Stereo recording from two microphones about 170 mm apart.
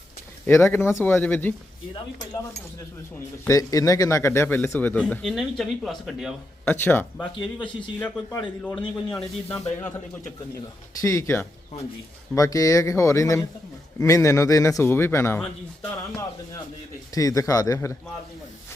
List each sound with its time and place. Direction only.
0.4 s speech: 15° left (ahead or behind)
3.4 s speech: 20° left (ahead or behind); by 6.3 s centre (ahead or behind)
6.7 s speech: 10° left (ahead or behind)
7.3 s speech: 30° left (ahead or behind)
7.8 s speech: 5° left (ahead or behind)
11.0 s speech: 15° left (ahead or behind)
17.2 s speech: 20° left (ahead or behind)